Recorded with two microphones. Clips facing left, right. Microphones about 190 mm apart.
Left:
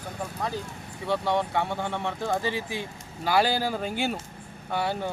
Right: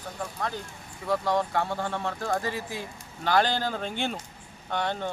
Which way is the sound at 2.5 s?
75° left (ahead or behind).